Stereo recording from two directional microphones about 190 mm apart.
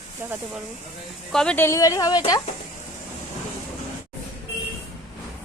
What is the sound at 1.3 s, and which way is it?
Speech, 5° left (ahead or behind).